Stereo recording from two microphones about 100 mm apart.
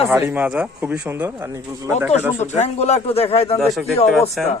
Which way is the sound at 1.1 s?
25° right (ahead or behind).